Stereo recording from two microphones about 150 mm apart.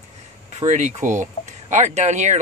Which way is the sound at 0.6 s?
50° right (ahead or behind).